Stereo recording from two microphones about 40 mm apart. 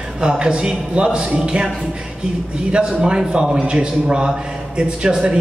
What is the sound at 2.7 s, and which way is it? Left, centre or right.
A man's voice, right.